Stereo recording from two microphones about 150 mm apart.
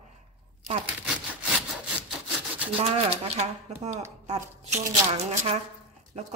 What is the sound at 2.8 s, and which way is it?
A woman's voice, 45° right (ahead or behind).